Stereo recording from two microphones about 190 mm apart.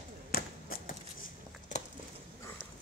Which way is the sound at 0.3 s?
50° left (ahead or behind).